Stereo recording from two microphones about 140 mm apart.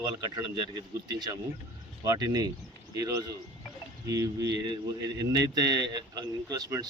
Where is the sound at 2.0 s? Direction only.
25° right (ahead or behind).